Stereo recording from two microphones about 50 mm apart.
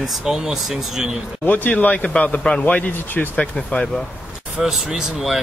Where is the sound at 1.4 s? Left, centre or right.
Left.